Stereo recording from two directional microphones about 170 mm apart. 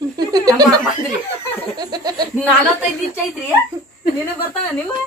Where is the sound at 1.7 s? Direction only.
25° right (ahead or behind).